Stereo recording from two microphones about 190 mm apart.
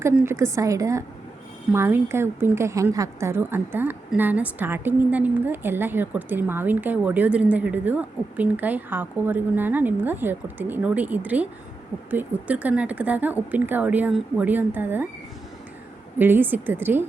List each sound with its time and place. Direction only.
0.0 s a woman's voice: 15° right (ahead or behind)
16.1 s a woman's voice: 10° right (ahead or behind)